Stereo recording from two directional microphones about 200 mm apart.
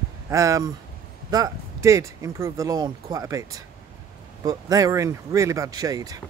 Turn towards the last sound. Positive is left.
turn(degrees=-20)  # may be behind; listen again after turning